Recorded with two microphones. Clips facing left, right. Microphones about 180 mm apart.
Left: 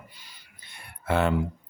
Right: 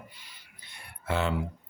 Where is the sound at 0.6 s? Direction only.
55° left (ahead or behind).